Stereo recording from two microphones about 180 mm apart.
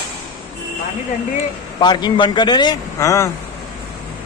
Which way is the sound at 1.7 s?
25° left (ahead or behind).